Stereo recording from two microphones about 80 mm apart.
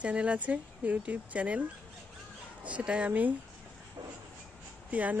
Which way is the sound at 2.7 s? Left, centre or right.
Centre.